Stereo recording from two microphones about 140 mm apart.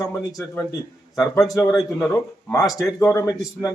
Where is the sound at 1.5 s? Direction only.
20° left (ahead or behind).